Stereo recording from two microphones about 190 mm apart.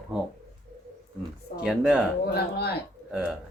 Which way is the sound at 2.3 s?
55° left (ahead or behind).